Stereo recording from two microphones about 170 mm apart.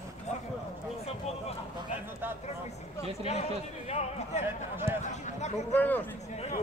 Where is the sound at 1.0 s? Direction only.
35° left (ahead or behind).